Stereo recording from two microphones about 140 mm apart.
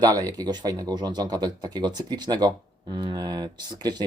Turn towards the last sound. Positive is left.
turn(degrees=-30)  # may be behind; listen again after turning